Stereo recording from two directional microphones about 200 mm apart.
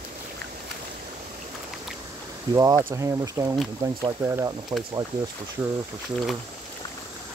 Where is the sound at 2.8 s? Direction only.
15° right (ahead or behind).